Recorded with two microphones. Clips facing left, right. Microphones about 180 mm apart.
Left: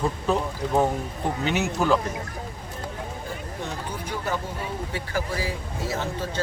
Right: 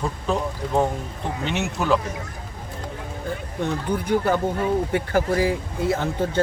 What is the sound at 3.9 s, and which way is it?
Speech, 60° right (ahead or behind).